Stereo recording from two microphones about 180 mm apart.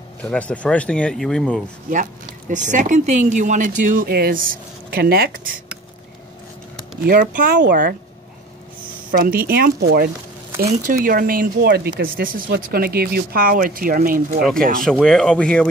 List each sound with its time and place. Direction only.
0.2 s speech: 5° left (ahead or behind)
1.9 s speech: 45° right (ahead or behind)
7.1 s speech: 55° right (ahead or behind)
9.1 s speech: 55° right (ahead or behind)
10.9 s speech: 50° right (ahead or behind)
12.0 s speech: 50° right (ahead or behind)
14.9 s speech: centre (ahead or behind)